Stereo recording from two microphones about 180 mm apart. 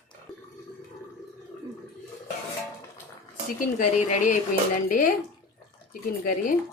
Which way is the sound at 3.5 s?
45° left (ahead or behind).